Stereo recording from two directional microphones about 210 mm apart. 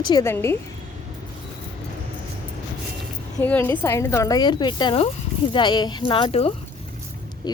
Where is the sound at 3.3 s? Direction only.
10° left (ahead or behind).